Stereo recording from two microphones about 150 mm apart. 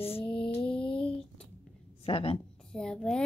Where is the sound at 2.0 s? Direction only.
40° left (ahead or behind).